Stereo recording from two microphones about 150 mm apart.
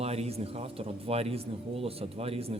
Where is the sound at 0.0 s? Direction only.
45° right (ahead or behind).